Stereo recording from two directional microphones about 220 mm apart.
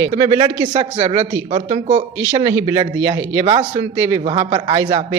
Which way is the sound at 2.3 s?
15° right (ahead or behind).